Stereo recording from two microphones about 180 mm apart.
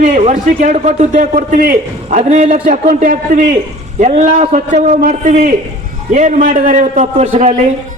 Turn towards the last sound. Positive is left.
turn(degrees=-40)  # may be behind; listen again after turning